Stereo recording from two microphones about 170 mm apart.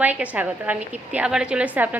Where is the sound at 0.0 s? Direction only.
10° right (ahead or behind).